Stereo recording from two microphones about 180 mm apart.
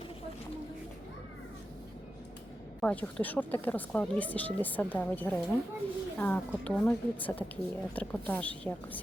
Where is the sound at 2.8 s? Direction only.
10° left (ahead or behind).